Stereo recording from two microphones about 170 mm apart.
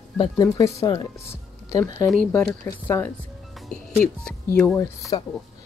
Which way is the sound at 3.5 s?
Centre (ahead or behind).